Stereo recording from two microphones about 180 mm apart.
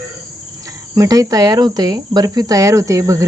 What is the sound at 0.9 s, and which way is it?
Speech, 20° right (ahead or behind).